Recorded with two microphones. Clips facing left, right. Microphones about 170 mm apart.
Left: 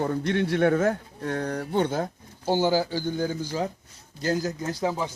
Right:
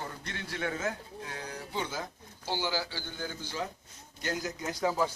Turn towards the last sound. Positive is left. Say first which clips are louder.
# left 4 dB
turn(degrees=30)  # may be behind; listen again after turning